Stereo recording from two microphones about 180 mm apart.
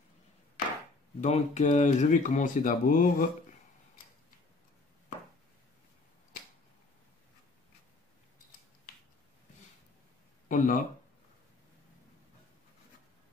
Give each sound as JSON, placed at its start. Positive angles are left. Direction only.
{"t": 1.2, "sound": "speech", "side_deg": 40}
{"t": 10.5, "sound": "speech", "side_deg": 50}